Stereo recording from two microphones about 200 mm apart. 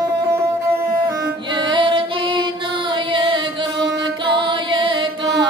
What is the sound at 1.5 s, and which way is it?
Music, 20° right (ahead or behind).